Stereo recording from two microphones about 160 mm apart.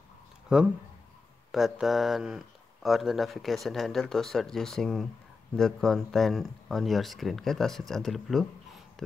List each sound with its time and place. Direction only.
0.5 s speech: 5° right (ahead or behind)